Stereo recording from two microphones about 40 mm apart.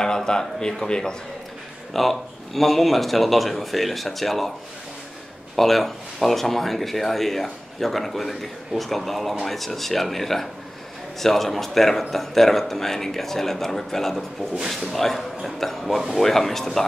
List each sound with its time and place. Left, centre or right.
0.0 s speech: centre
2.0 s speech: centre
5.6 s a man's voice: centre